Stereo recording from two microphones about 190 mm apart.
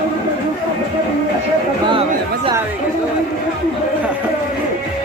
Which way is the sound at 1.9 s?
30° right (ahead or behind).